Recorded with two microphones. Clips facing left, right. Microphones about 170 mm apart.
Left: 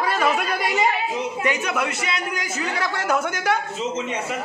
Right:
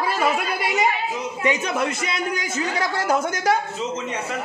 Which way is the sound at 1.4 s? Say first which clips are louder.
Right 3 dB; 25° right (ahead or behind).